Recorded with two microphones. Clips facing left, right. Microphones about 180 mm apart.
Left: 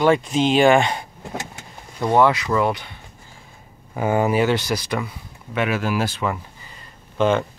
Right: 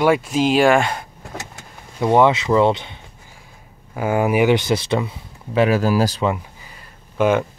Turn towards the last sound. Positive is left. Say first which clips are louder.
# right 2 dB
turn(degrees=-10)  # may be behind; listen again after turning